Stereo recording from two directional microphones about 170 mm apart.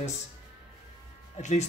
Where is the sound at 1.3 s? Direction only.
45° left (ahead or behind).